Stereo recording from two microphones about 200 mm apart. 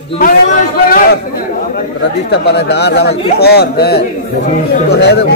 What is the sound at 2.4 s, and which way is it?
Speech, 55° left (ahead or behind).